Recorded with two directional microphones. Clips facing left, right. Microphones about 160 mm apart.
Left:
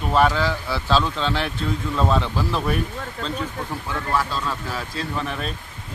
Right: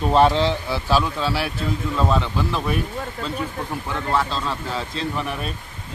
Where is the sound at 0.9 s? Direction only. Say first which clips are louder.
Even; 10° right (ahead or behind).